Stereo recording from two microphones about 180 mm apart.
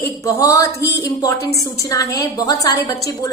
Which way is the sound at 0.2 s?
20° left (ahead or behind).